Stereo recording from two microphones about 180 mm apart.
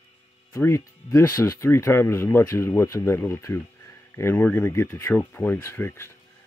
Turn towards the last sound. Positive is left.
turn(degrees=15)  # may be behind; listen again after turning